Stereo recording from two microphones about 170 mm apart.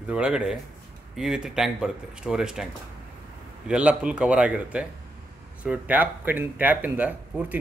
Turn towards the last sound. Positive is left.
turn(degrees=-10)  # may be behind; listen again after turning